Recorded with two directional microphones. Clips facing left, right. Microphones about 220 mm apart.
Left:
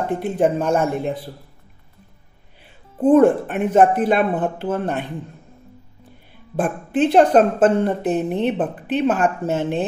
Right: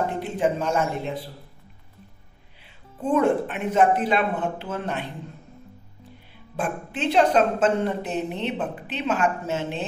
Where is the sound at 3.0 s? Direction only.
50° left (ahead or behind).